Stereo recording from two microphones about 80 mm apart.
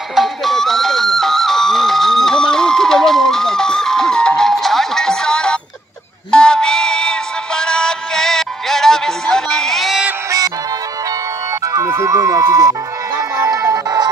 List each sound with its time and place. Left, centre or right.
0.1 s music: centre
6.3 s synthetic singing: centre
11.6 s music: right